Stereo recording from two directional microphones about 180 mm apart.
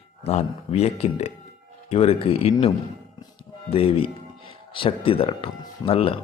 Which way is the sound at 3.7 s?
30° left (ahead or behind).